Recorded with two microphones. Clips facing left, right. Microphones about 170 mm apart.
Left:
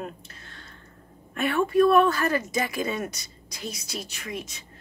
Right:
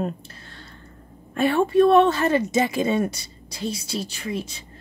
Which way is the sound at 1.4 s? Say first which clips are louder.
Right 4 dB; 30° right (ahead or behind).